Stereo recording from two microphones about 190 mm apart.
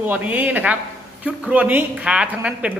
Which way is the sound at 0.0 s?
10° right (ahead or behind).